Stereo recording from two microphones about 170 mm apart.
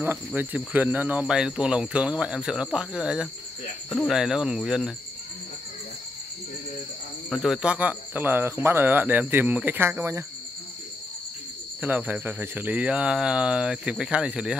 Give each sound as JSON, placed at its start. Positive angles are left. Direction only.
{"t": 0.0, "sound": "speech", "side_deg": -10}
{"t": 7.2, "sound": "speech", "side_deg": 0}
{"t": 11.8, "sound": "speech", "side_deg": -10}